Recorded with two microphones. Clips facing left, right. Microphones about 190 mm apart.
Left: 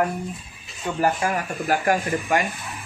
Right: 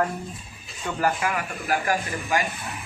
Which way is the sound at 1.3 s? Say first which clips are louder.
Left 3 dB; 40° left (ahead or behind).